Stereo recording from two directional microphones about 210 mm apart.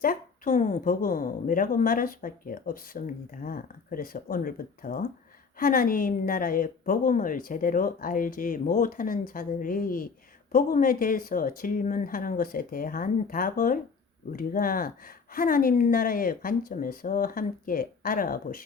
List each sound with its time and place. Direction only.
0.0 s a woman's voice: 40° left (ahead or behind)